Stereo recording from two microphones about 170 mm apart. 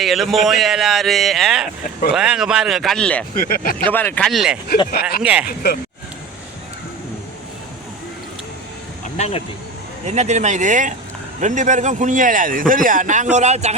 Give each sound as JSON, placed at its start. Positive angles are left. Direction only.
{"t": 0.0, "sound": "speech", "side_deg": 0}
{"t": 3.3, "sound": "speech", "side_deg": 60}
{"t": 3.8, "sound": "speech", "side_deg": 10}
{"t": 4.3, "sound": "speech", "side_deg": 0}
{"t": 9.1, "sound": "speech", "side_deg": 40}
{"t": 10.1, "sound": "speech", "side_deg": -45}